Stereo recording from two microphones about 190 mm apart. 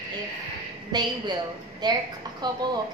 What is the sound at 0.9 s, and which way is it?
A woman's voice, 20° right (ahead or behind).